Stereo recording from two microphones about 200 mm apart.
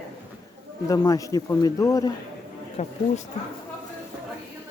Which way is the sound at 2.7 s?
30° left (ahead or behind).